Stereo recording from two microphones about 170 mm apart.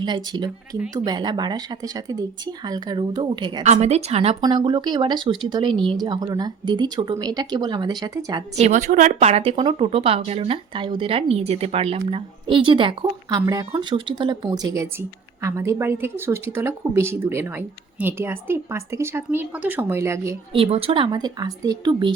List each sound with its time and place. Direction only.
0.0 s speech: 25° right (ahead or behind)
3.6 s speech: 40° right (ahead or behind); by 8.4 s 25° right (ahead or behind)
8.5 s a woman's voice: 45° right (ahead or behind); by 20.3 s 15° right (ahead or behind)
20.5 s speech: 35° right (ahead or behind)